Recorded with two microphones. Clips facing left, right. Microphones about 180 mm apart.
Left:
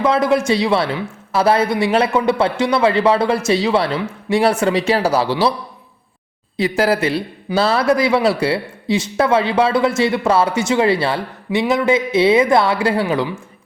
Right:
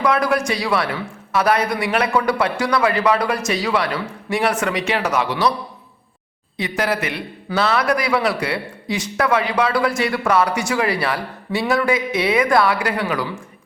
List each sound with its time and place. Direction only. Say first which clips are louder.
0.0 s a man's voice: left 3 dB; 25° left (ahead or behind)
6.6 s a man's voice: left 6 dB; 30° left (ahead or behind)